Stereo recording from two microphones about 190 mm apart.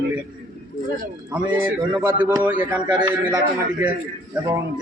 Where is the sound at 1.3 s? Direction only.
10° right (ahead or behind).